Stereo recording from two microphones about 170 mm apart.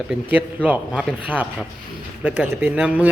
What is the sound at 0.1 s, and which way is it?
Speech, 5° right (ahead or behind).